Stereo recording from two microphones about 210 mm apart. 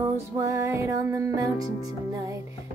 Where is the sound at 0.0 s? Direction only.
15° right (ahead or behind).